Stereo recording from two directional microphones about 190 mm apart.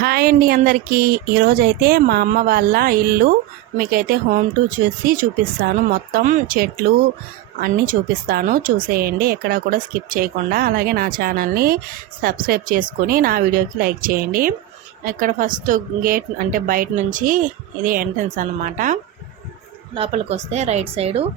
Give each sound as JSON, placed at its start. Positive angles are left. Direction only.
{"t": 0.0, "sound": "a woman's voice", "side_deg": -50}
{"t": 5.6, "sound": "a woman's voice", "side_deg": -50}
{"t": 19.9, "sound": "speech", "side_deg": -30}